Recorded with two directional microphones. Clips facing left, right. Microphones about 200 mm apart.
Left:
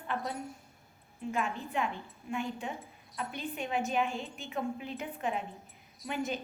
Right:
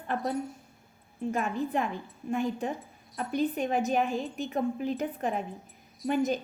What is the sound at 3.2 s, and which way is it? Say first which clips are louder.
A woman's voice: right 9 dB; 40° right (ahead or behind).